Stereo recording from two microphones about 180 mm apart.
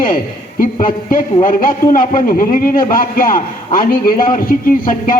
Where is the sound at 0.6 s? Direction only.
50° left (ahead or behind).